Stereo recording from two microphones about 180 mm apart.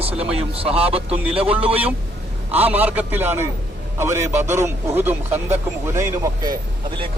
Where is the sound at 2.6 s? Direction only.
10° right (ahead or behind).